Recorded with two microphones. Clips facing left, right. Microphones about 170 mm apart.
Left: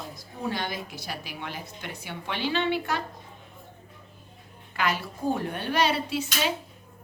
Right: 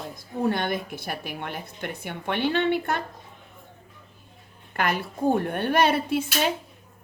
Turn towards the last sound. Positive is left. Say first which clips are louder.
# right 4 dB
turn(degrees=-55)  # may be behind; listen again after turning